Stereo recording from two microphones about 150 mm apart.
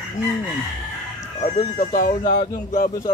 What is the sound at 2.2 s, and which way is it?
Speech, 25° left (ahead or behind).